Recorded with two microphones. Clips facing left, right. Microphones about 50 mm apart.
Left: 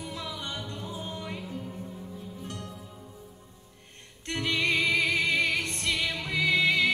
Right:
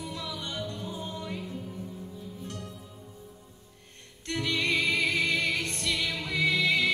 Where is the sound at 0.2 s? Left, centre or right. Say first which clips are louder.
Right 1 dB; left.